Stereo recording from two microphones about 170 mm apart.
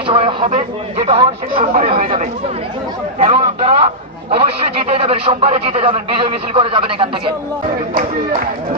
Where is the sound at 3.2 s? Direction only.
35° right (ahead or behind).